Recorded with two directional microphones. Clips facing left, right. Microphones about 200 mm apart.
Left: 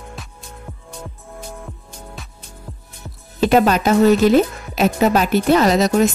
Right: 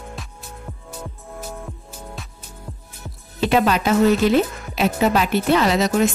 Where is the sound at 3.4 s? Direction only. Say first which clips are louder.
Left 4 dB; 45° left (ahead or behind).